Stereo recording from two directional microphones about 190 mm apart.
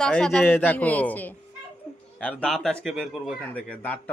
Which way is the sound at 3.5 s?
10° left (ahead or behind).